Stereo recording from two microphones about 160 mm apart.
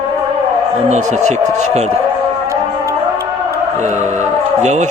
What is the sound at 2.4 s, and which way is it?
Music, 20° right (ahead or behind).